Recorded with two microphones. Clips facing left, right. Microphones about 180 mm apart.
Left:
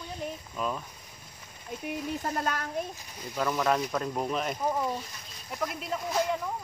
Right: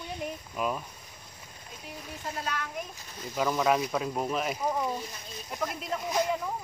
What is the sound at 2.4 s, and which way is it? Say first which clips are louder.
Speech: even; 45° left (ahead or behind).